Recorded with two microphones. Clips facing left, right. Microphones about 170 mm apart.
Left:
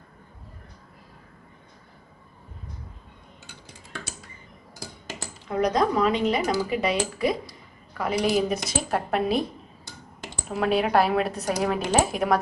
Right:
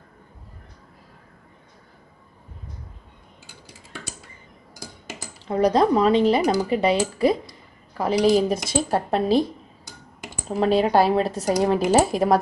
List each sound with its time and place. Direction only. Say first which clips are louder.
5.5 s speech: right 5 dB; 30° right (ahead or behind)
10.6 s speech: right 3 dB; 25° right (ahead or behind)